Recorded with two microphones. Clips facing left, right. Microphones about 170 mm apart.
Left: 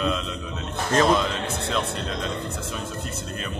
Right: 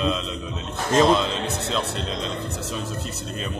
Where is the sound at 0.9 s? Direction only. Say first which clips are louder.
Right 2 dB; 20° right (ahead or behind).